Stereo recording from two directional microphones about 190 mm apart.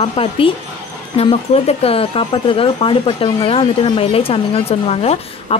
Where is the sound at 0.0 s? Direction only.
30° left (ahead or behind).